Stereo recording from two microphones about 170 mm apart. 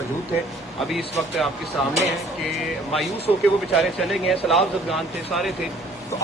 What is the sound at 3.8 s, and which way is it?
Speech, centre (ahead or behind).